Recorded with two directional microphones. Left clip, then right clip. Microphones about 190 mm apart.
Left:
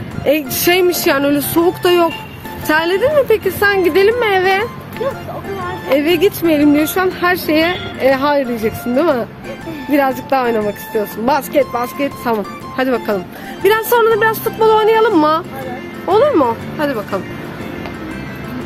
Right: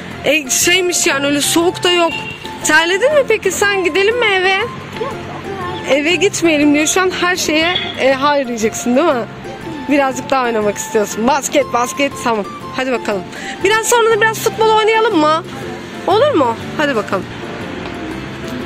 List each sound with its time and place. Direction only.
0.2 s speech: 5° right (ahead or behind)
5.9 s a woman's voice: 10° right (ahead or behind)